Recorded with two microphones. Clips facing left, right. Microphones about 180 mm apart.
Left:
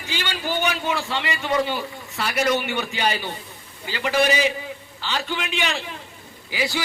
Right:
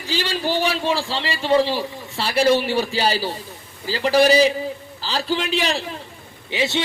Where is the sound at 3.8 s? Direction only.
35° right (ahead or behind).